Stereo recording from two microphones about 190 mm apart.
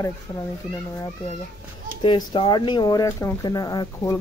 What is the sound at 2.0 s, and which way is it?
Speech, 25° left (ahead or behind).